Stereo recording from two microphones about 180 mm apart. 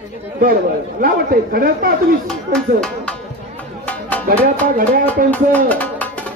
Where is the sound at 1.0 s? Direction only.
55° right (ahead or behind).